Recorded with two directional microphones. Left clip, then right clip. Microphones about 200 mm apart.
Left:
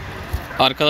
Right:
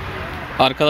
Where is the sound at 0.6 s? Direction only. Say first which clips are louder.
Right 1 dB; centre (ahead or behind).